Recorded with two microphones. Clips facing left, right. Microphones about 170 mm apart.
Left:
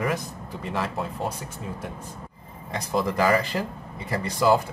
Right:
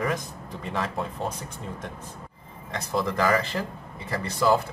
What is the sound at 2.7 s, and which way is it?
Speech, 10° left (ahead or behind).